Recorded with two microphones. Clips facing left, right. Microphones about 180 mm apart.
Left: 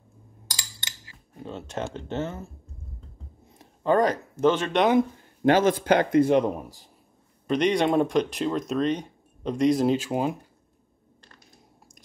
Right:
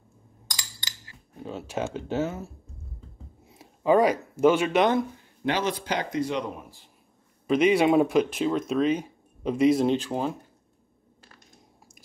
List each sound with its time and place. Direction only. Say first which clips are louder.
1.3 s speech: right 1 dB; centre (ahead or behind)
3.5 s speech: right 1 dB; 5° right (ahead or behind)
5.4 s a man's voice: left 7 dB; 50° left (ahead or behind)
7.4 s speech: right 2 dB; 5° right (ahead or behind)